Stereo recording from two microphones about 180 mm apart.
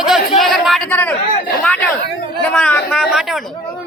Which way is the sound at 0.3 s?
Centre (ahead or behind).